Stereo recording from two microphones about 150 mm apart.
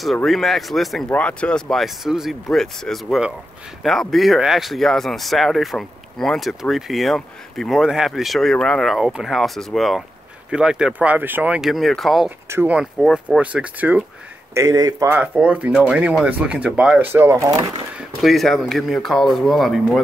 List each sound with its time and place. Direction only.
0.0 s speech: centre (ahead or behind)
12.4 s speech: 15° right (ahead or behind)
13.0 s speech: 5° left (ahead or behind)
13.4 s speech: 10° right (ahead or behind)
14.5 s speech: 20° right (ahead or behind)
15.1 s speech: 10° right (ahead or behind)
17.1 s speech: 15° right (ahead or behind)
17.9 s speech: centre (ahead or behind)